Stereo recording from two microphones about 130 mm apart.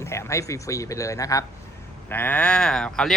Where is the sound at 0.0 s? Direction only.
20° left (ahead or behind).